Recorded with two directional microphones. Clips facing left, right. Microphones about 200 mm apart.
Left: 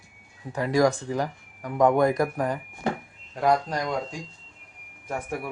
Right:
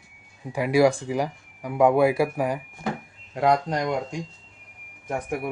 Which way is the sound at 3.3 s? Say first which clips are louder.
Right 2 dB; 20° right (ahead or behind).